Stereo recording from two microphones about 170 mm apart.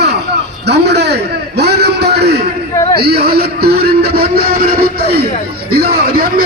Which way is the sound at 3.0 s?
70° right (ahead or behind).